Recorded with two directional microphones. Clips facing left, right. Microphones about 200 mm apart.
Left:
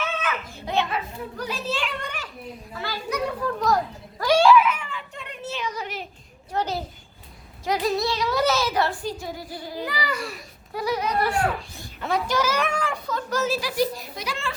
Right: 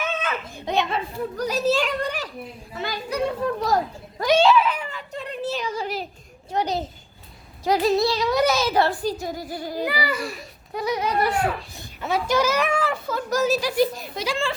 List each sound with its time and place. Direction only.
0.0 s a sound: 25° right (ahead or behind)
0.5 s a child's voice: 15° right (ahead or behind)
1.4 s a woman's voice: 40° right (ahead or behind)
2.7 s a child's voice: 20° right (ahead or behind)
4.2 s a sound: 20° right (ahead or behind)
6.5 s a child's voice: 20° right (ahead or behind)
7.6 s a woman's voice: 30° right (ahead or behind)
8.3 s a child's voice: 15° right (ahead or behind)
8.7 s a woman's voice: 35° right (ahead or behind)
9.8 s a child's voice: 10° right (ahead or behind)
10.8 s a child's voice: 20° right (ahead or behind)
12.0 s a child's voice: 5° right (ahead or behind); by 14.5 s 30° right (ahead or behind)